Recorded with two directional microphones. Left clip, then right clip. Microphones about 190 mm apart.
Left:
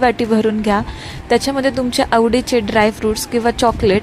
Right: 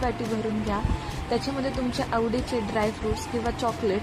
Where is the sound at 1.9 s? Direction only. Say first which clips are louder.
Left 13 dB; 35° left (ahead or behind).